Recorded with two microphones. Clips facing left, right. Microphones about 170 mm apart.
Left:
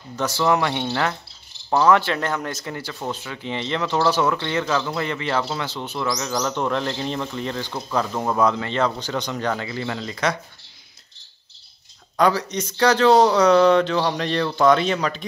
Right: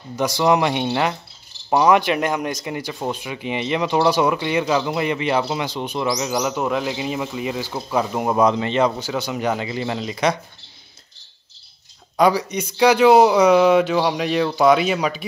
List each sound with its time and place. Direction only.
0.1 s speech: 15° right (ahead or behind)
12.2 s speech: 10° right (ahead or behind)